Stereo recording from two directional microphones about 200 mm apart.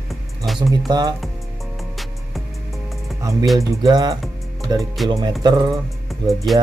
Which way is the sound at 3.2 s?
15° right (ahead or behind).